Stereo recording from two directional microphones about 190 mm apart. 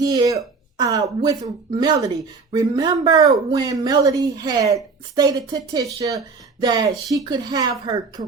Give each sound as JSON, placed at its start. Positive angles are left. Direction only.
{"t": 0.0, "sound": "speech", "side_deg": -20}